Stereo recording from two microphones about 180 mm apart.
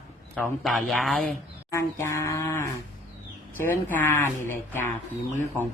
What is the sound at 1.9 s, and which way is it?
Mantra, 15° left (ahead or behind).